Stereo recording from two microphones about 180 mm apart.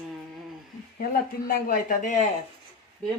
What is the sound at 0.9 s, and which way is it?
Speech, 55° left (ahead or behind).